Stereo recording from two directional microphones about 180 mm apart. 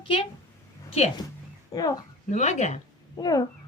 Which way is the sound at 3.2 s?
20° left (ahead or behind).